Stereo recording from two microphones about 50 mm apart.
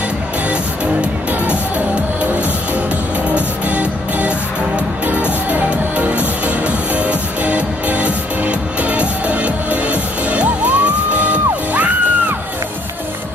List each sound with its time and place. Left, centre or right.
1.5 s music: right